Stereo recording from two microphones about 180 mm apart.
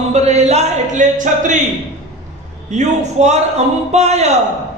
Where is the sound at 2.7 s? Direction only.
40° right (ahead or behind).